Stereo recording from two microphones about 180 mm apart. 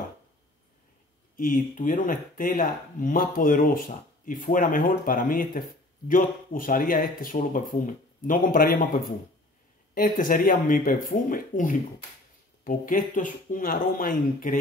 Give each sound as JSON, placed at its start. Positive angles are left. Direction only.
{"t": 1.3, "sound": "speech", "side_deg": 50}